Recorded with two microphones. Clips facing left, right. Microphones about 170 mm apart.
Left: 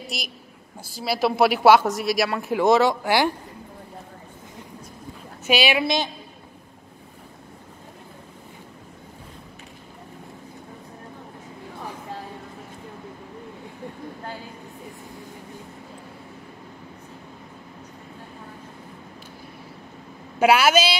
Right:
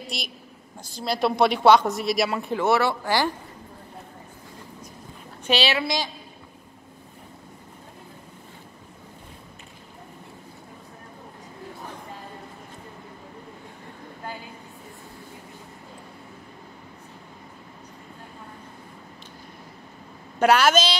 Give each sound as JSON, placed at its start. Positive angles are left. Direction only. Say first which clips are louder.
{"t": 0.1, "sound": "speech", "louder": "left 1 dB", "side_deg": 0}
{"t": 2.5, "sound": "speech", "louder": "left 5 dB", "side_deg": 15}
{"t": 5.5, "sound": "speech", "louder": "left 3 dB", "side_deg": 15}
{"t": 20.3, "sound": "a woman's voice", "louder": "left 1 dB", "side_deg": 10}